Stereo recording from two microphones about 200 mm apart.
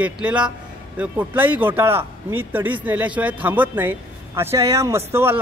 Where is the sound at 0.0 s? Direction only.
5° right (ahead or behind).